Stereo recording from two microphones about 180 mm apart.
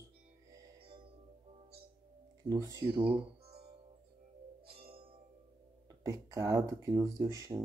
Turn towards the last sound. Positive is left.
turn(degrees=-20)  # may be behind; listen again after turning